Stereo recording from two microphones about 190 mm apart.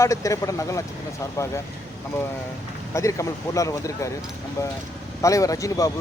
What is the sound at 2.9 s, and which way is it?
Speech, 15° left (ahead or behind).